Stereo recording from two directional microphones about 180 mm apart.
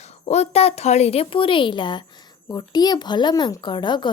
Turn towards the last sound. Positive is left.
turn(degrees=25)  # may be behind; listen again after turning